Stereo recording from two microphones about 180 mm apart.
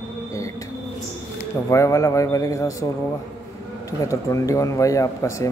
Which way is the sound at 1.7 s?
15° left (ahead or behind).